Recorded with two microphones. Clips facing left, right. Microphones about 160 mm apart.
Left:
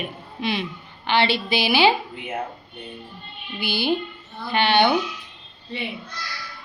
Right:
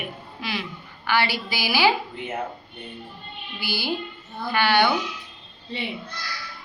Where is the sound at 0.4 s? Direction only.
20° left (ahead or behind).